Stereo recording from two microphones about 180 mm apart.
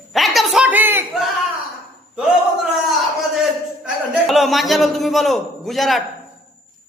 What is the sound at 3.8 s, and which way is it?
A man's voice, centre (ahead or behind).